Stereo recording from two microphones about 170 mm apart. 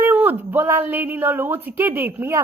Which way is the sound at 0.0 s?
10° right (ahead or behind).